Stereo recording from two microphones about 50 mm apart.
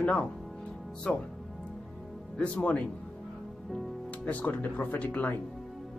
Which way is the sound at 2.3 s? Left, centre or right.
Left.